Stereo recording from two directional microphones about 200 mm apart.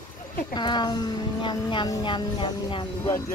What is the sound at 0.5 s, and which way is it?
Speech, 20° left (ahead or behind).